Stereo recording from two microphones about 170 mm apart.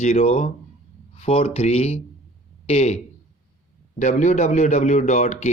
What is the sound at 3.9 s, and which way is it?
Speech, 45° left (ahead or behind).